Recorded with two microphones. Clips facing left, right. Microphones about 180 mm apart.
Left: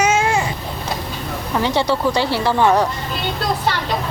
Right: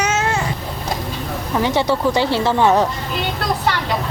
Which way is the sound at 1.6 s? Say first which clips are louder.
Right 1 dB; 20° right (ahead or behind).